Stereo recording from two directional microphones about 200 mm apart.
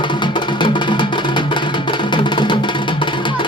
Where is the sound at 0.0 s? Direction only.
25° left (ahead or behind).